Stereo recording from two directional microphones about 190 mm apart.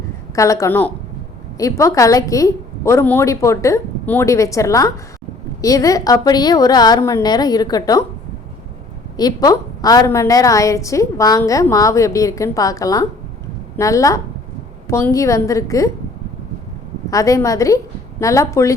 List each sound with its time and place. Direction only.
0.3 s a woman's voice: 15° left (ahead or behind)
9.1 s a woman's voice: 20° left (ahead or behind)
17.1 s a woman's voice: 15° left (ahead or behind)